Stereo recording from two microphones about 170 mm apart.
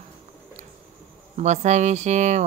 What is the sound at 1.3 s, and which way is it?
Speech, 45° right (ahead or behind).